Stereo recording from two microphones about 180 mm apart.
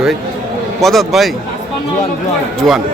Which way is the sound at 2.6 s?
Centre (ahead or behind).